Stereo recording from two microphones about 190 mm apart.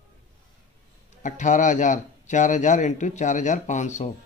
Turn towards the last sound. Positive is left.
turn(degrees=40)  # may be behind; listen again after turning